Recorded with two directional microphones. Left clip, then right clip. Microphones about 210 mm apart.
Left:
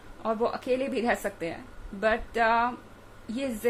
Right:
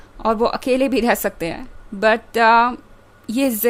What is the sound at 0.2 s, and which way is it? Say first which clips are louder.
Speech: right 10 dB; 50° right (ahead or behind).